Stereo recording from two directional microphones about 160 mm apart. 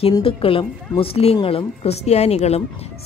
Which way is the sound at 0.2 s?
35° left (ahead or behind).